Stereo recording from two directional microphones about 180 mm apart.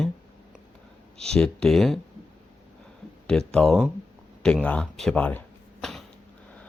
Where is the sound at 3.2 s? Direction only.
5° left (ahead or behind).